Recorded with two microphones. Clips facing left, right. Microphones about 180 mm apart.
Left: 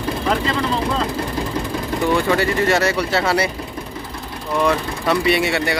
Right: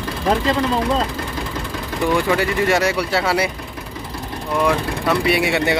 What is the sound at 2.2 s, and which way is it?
Speech, 10° right (ahead or behind).